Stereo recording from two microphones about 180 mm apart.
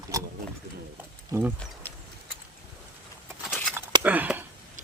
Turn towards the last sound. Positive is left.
turn(degrees=-10)  # may be behind; listen again after turning